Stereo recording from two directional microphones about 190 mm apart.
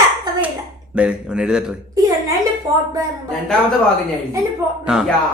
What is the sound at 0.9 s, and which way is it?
Speech, 5° right (ahead or behind).